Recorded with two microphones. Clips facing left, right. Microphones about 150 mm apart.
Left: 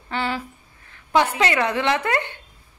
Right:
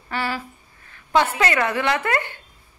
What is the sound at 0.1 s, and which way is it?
A woman's voice, 20° left (ahead or behind).